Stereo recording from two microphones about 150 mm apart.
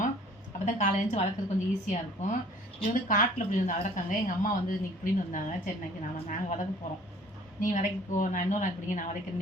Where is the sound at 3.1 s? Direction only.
60° left (ahead or behind).